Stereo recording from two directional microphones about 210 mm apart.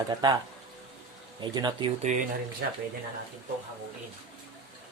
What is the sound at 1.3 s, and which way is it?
Speech, 20° right (ahead or behind).